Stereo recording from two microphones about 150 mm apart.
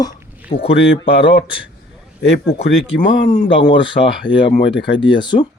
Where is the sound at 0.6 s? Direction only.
40° left (ahead or behind).